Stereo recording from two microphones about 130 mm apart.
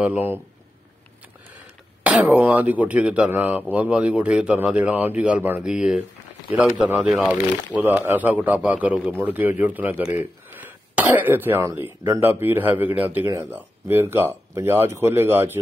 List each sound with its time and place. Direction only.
0.0 s speech: 15° right (ahead or behind)
2.0 s speech: 10° right (ahead or behind)